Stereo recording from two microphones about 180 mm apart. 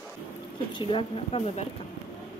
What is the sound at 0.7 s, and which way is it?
Speech, 30° left (ahead or behind).